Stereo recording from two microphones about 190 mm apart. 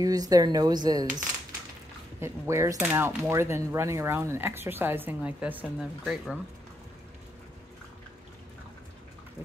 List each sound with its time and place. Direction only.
0.0 s speech: 20° right (ahead or behind)